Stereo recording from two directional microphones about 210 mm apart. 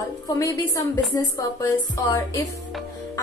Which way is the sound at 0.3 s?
15° left (ahead or behind).